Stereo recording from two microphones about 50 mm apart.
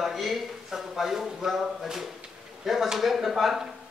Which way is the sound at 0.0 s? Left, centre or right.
Centre.